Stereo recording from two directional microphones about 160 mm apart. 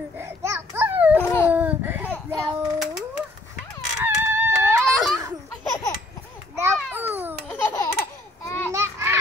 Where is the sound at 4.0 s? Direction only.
15° right (ahead or behind).